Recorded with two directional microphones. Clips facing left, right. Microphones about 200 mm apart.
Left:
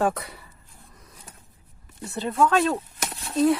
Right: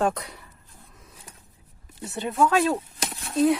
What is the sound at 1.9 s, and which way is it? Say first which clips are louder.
Speech: left 1 dB; 25° right (ahead or behind).